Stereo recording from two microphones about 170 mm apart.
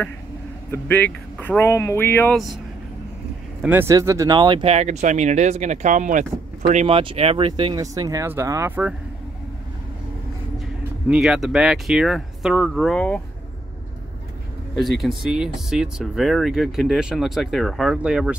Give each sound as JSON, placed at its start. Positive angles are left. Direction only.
{"t": 0.7, "sound": "speech", "side_deg": 10}
{"t": 3.6, "sound": "speech", "side_deg": -15}
{"t": 11.1, "sound": "speech", "side_deg": -5}
{"t": 14.8, "sound": "speech", "side_deg": 0}